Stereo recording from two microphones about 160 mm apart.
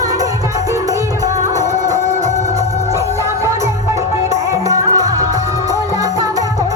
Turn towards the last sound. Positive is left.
turn(degrees=-20)  # may be behind; listen again after turning